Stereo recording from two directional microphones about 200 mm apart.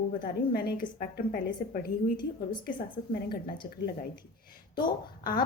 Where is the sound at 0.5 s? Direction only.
50° left (ahead or behind).